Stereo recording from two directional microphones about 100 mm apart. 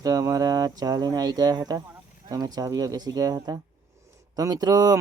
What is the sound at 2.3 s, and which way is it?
Speech, 40° right (ahead or behind).